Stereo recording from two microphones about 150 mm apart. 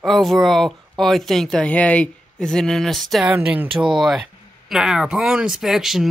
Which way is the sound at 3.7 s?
30° right (ahead or behind).